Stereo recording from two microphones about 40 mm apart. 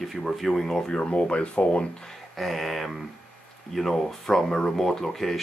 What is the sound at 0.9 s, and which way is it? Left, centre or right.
Speech, left.